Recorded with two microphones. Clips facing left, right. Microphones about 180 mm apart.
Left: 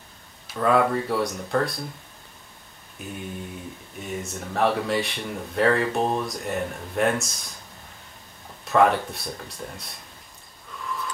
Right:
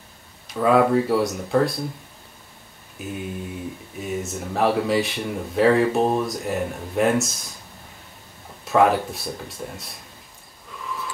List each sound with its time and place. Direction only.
0.5 s speech: centre (ahead or behind)
3.0 s mantra: centre (ahead or behind)
4.0 s speech: centre (ahead or behind)
8.6 s speech: centre (ahead or behind)
10.8 s a sound: centre (ahead or behind)